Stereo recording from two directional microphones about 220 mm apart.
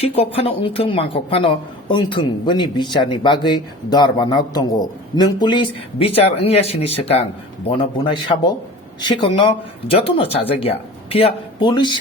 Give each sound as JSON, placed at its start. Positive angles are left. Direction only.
{"t": 0.0, "sound": "speech", "side_deg": 25}